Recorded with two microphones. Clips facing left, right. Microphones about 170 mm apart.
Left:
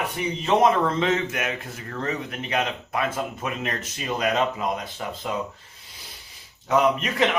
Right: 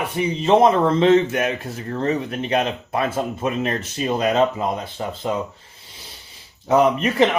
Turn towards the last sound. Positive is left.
turn(degrees=-30)  # may be behind; listen again after turning